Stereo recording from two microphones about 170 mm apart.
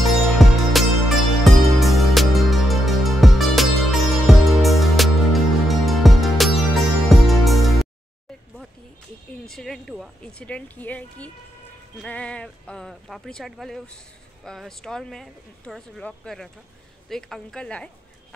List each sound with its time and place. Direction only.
0.0 s music: centre (ahead or behind)
9.5 s speech: centre (ahead or behind)